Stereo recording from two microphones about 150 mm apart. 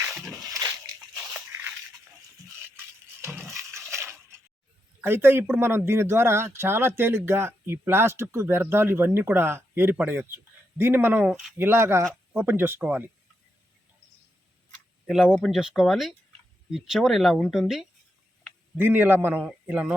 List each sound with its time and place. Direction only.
0.2 s a sound: 20° right (ahead or behind)
4.9 s speech: 15° right (ahead or behind)
15.0 s speech: 5° right (ahead or behind)
18.8 s speech: 15° right (ahead or behind)